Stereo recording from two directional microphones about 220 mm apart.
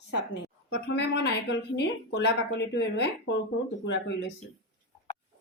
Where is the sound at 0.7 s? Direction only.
50° left (ahead or behind).